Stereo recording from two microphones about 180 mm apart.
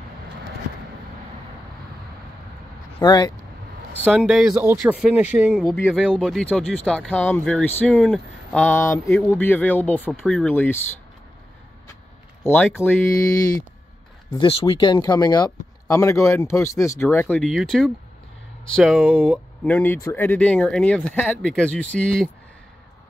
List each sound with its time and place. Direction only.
3.0 s speech: 20° left (ahead or behind)
4.1 s speech: centre (ahead or behind)
12.4 s speech: 10° left (ahead or behind)
14.4 s speech: 30° left (ahead or behind); by 22.3 s 5° left (ahead or behind)